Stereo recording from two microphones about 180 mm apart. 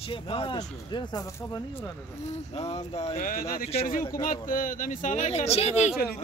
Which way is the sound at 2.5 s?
35° left (ahead or behind).